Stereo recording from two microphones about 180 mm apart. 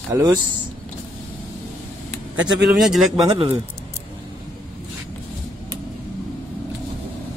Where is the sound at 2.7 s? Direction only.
Centre (ahead or behind).